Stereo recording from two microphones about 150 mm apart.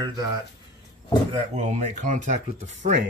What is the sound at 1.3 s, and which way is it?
Speech, 50° right (ahead or behind).